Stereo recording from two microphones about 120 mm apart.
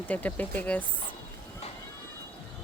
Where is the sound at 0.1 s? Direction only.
15° left (ahead or behind).